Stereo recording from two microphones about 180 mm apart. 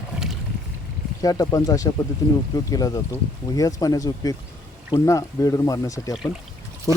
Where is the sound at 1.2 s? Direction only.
20° left (ahead or behind).